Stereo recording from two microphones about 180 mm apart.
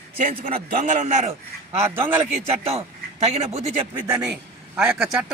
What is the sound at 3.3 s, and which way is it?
Speech, 35° right (ahead or behind).